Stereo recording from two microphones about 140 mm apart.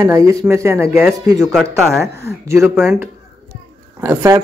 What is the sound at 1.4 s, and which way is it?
Speech, centre (ahead or behind).